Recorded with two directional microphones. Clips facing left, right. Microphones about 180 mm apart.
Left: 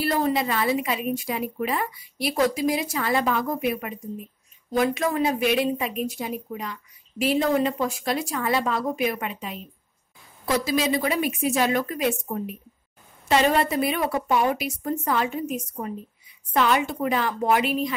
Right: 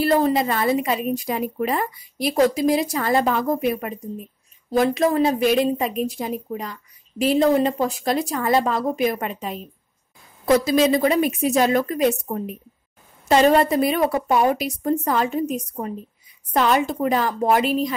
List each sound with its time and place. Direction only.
0.0 s a woman's voice: 45° right (ahead or behind)